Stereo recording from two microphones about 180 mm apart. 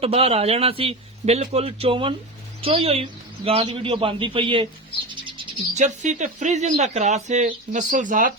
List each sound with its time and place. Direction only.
0.0 s a man's voice: 35° right (ahead or behind)
5.7 s speech: 40° right (ahead or behind)